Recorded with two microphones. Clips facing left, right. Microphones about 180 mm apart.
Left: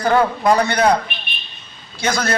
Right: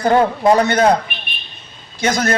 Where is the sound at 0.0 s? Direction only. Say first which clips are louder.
Right 2 dB; 25° right (ahead or behind).